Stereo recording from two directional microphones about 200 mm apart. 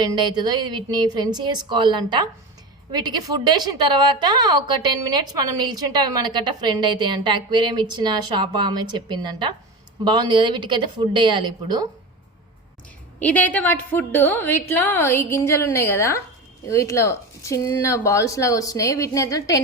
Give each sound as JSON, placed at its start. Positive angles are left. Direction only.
{"t": 0.0, "sound": "a woman's voice", "side_deg": -20}
{"t": 13.1, "sound": "speech", "side_deg": 5}